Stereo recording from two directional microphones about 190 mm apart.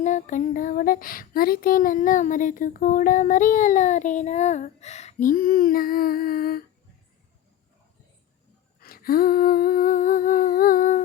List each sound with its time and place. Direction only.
0.0 s female singing: 40° left (ahead or behind)
8.8 s female singing: 50° left (ahead or behind)